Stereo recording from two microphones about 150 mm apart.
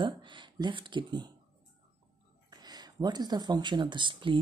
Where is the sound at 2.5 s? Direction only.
25° right (ahead or behind).